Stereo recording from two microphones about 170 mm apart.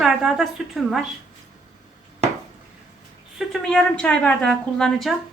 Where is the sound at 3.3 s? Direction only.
Centre (ahead or behind).